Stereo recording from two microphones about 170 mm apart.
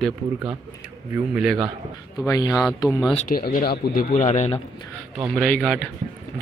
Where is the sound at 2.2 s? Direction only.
20° left (ahead or behind).